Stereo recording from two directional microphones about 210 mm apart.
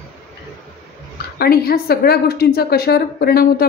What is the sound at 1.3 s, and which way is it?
A woman's voice, 45° left (ahead or behind).